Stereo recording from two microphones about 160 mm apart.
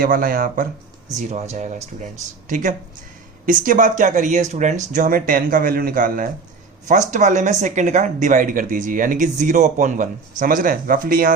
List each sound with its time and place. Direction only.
0.0 s speech: 60° right (ahead or behind)
1.1 s speech: 45° right (ahead or behind)
4.9 s speech: 60° right (ahead or behind)